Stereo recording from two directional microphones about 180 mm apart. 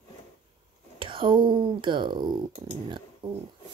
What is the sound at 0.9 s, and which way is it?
Speech, 30° right (ahead or behind).